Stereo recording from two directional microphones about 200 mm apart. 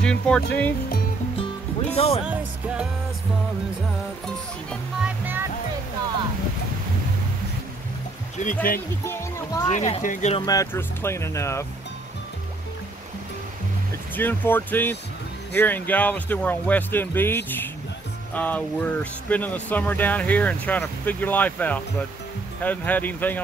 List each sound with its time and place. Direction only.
0.0 s speech: 5° left (ahead or behind)
2.0 s speech: 30° left (ahead or behind)
2.2 s speech: 5° right (ahead or behind)
4.6 s music: 5° right (ahead or behind)
8.4 s speech: 35° left (ahead or behind)
9.0 s speech: 10° left (ahead or behind)
9.7 s speech: 35° left (ahead or behind)
10.4 s speech: 15° left (ahead or behind)
14.1 s speech: 10° left (ahead or behind)